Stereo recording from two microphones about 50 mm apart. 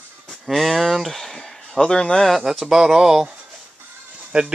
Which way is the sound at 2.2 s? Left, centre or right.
Centre.